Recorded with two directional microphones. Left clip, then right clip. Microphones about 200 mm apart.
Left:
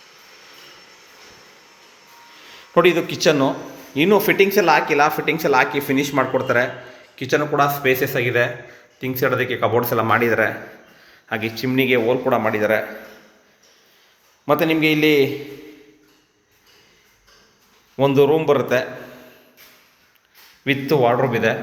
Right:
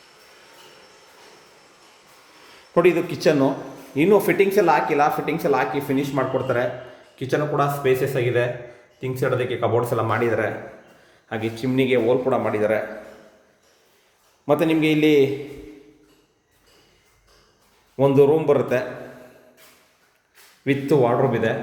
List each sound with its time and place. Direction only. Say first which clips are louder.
2.5 s a man's voice: left 2 dB; centre (ahead or behind)
14.4 s a man's voice: left 2 dB; 5° right (ahead or behind)
17.9 s a man's voice: left 1 dB; 5° right (ahead or behind)
20.7 s a man's voice: left 2 dB; 10° right (ahead or behind)